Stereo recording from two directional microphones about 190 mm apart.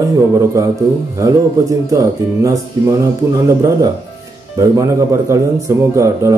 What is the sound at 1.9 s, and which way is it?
A man's voice, 15° right (ahead or behind).